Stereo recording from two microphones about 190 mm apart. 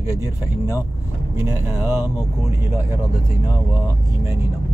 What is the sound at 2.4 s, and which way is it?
Speech, 15° right (ahead or behind).